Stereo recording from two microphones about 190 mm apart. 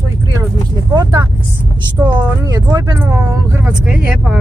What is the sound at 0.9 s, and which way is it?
Speech, 20° right (ahead or behind).